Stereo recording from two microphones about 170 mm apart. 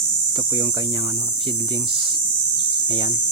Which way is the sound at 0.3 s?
30° right (ahead or behind).